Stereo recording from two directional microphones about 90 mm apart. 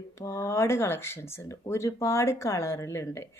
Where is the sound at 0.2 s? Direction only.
30° left (ahead or behind).